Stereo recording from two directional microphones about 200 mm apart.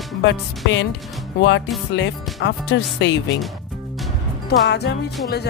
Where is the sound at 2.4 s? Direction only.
60° left (ahead or behind).